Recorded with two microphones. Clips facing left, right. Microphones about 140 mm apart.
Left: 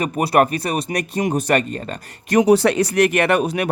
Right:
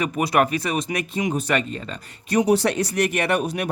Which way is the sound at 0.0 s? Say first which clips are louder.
Left 3 dB; 35° left (ahead or behind).